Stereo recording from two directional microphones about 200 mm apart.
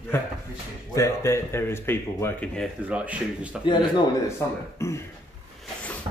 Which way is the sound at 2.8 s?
5° right (ahead or behind).